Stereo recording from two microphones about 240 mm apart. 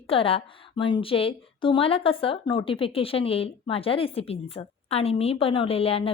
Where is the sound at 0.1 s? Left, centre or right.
Left.